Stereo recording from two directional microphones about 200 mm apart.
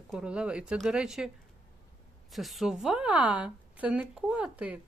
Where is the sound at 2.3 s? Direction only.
Centre (ahead or behind).